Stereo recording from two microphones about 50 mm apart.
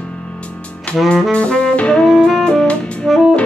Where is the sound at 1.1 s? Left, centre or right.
Left.